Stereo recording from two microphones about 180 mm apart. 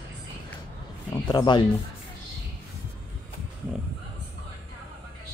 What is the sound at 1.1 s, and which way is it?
Speech, 20° left (ahead or behind).